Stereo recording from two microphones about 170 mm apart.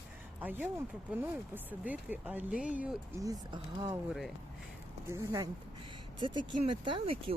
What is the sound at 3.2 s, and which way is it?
Speech, 20° right (ahead or behind).